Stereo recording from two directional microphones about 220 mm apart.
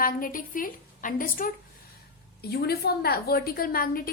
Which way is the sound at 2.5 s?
45° left (ahead or behind).